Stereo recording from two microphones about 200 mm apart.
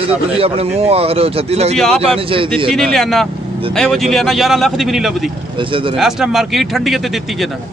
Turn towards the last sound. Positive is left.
turn(degrees=0)  # may be behind; listen again after turning